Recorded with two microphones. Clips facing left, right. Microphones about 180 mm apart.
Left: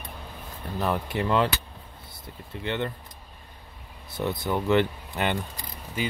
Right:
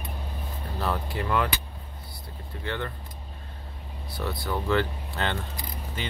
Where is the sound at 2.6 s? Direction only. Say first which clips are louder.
Left 3 dB; 20° left (ahead or behind).